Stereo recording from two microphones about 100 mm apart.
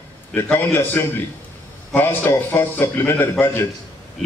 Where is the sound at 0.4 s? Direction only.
20° left (ahead or behind).